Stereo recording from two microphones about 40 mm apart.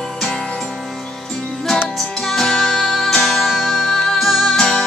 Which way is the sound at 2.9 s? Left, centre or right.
Centre.